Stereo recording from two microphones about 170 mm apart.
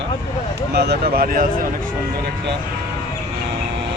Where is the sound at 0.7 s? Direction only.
70° right (ahead or behind).